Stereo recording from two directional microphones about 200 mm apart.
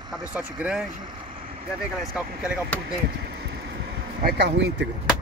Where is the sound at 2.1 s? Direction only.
5° right (ahead or behind).